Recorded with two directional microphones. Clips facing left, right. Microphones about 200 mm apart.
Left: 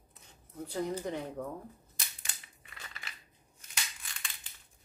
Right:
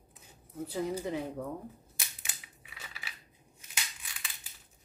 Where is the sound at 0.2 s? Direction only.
5° right (ahead or behind).